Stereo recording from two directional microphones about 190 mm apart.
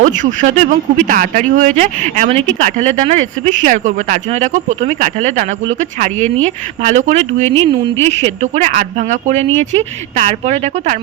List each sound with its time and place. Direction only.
0.0 s speech: 40° right (ahead or behind)